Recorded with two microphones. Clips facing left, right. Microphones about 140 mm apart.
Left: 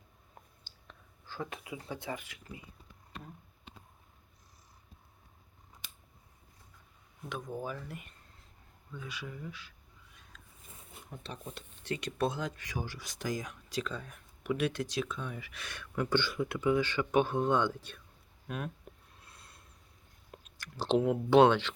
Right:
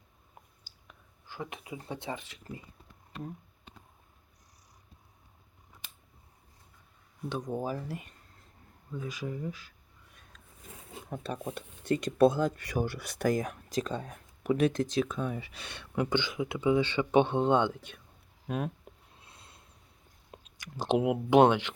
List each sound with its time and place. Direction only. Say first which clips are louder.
0.9 s a sound: left 1 dB; 15° right (ahead or behind)
1.7 s speech: right 3 dB; 25° right (ahead or behind)
7.3 s speech: right 5 dB; 35° right (ahead or behind)
11.5 s speech: right 7 dB; 45° right (ahead or behind); by 18.0 s 15° right (ahead or behind)
18.4 s speech: right 6 dB; 30° right (ahead or behind)
19.2 s a sound: right 1 dB; 25° right (ahead or behind)
20.3 s speech: right 3 dB; 15° right (ahead or behind)